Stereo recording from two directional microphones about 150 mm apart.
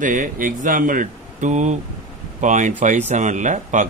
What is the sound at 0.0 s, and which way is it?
Speech, 60° right (ahead or behind).